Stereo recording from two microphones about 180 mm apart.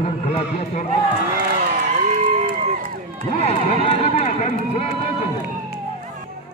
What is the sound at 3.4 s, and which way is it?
Speech, 35° left (ahead or behind).